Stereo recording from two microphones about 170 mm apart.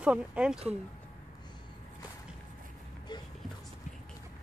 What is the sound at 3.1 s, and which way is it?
Music, 25° left (ahead or behind).